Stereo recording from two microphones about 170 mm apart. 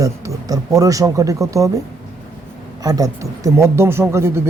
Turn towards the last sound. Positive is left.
turn(degrees=-15)  # may be behind; listen again after turning